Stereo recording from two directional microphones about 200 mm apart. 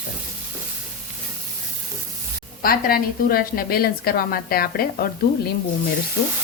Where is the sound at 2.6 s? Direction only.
45° left (ahead or behind).